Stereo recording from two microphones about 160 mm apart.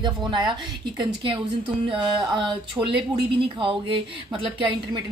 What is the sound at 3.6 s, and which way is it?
A woman's voice, 35° right (ahead or behind).